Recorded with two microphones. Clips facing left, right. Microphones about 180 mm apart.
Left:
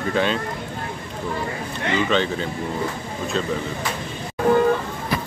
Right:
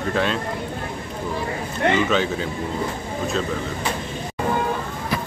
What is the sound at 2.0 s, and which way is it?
Speech, 5° right (ahead or behind).